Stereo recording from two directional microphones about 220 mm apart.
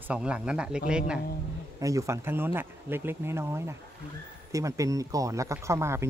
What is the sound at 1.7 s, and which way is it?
Speech, 15° right (ahead or behind).